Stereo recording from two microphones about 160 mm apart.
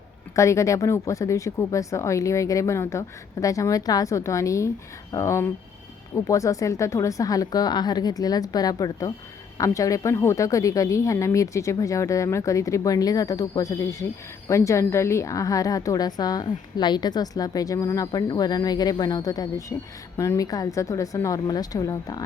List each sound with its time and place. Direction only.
0.3 s a woman's voice: 20° left (ahead or behind)